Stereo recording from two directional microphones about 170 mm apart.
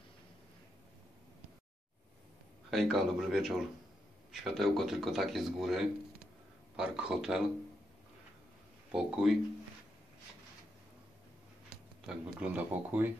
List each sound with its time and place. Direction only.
2.7 s speech: centre (ahead or behind)
8.9 s speech: 5° right (ahead or behind)
12.1 s speech: 5° right (ahead or behind)